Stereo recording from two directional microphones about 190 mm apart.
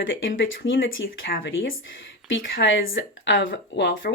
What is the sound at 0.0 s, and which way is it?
Speech, 80° left.